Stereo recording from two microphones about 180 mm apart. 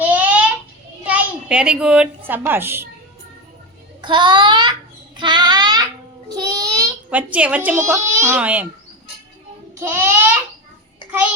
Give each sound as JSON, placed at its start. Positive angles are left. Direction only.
{"t": 0.0, "sound": "a sound", "side_deg": -10}
{"t": 1.0, "sound": "a woman's voice", "side_deg": -5}
{"t": 4.0, "sound": "a child's voice", "side_deg": -25}
{"t": 5.1, "sound": "child singing", "side_deg": -25}
{"t": 7.1, "sound": "speech", "side_deg": -10}
{"t": 9.8, "sound": "babbling", "side_deg": -15}
{"t": 11.0, "sound": "child singing", "side_deg": 25}